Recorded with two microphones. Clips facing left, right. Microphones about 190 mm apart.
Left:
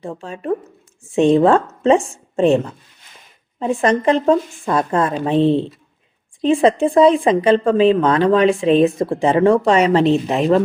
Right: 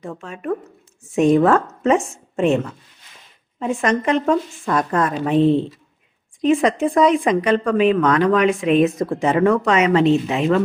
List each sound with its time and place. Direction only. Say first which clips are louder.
0.0 s a woman's voice: left 2 dB; 30° left (ahead or behind)